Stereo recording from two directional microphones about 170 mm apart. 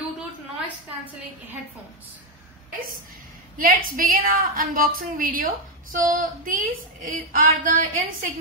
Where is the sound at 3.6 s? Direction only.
55° right (ahead or behind).